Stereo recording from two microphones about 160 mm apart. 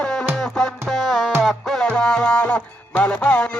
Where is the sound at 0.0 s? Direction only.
5° left (ahead or behind).